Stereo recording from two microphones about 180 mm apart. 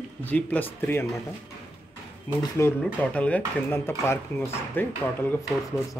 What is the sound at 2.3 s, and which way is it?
Speech, 25° left (ahead or behind).